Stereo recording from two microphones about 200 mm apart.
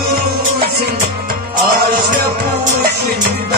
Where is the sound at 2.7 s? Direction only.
50° right (ahead or behind).